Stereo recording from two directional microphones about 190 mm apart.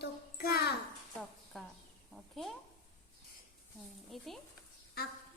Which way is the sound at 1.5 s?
Centre (ahead or behind).